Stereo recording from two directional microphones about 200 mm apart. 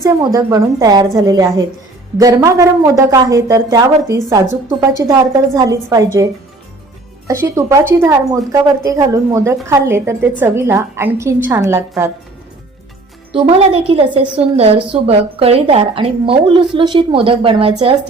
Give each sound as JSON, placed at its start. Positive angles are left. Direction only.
{"t": 0.0, "sound": "speech", "side_deg": -20}
{"t": 7.3, "sound": "speech", "side_deg": -15}
{"t": 13.3, "sound": "a woman's voice", "side_deg": -30}